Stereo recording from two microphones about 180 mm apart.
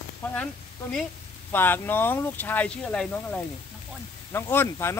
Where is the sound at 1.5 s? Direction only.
10° left (ahead or behind).